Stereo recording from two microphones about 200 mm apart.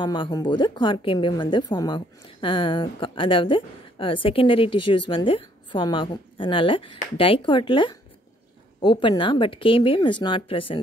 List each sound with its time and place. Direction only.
0.0 s a woman's voice: 25° left (ahead or behind)